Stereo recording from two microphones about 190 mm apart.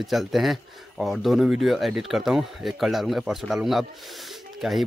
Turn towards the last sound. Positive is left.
turn(degrees=0)  # may be behind; listen again after turning